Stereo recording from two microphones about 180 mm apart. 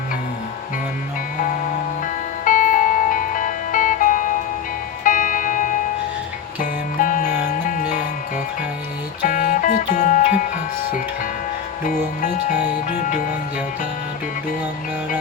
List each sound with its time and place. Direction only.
2.4 s music: 50° left (ahead or behind)
9.2 s music: 45° left (ahead or behind)
11.9 s music: 40° left (ahead or behind)